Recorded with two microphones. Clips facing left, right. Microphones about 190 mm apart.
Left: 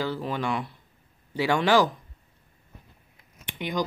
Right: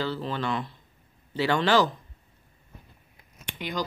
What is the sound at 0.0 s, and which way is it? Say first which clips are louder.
Speech: left 1 dB; 10° left (ahead or behind).